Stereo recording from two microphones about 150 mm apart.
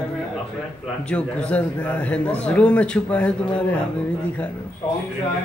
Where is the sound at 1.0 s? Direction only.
10° left (ahead or behind).